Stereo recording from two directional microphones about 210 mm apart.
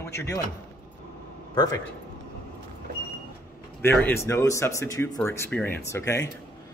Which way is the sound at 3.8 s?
10° left (ahead or behind).